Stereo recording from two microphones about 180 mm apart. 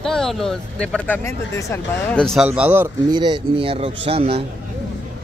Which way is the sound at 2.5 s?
10° right (ahead or behind).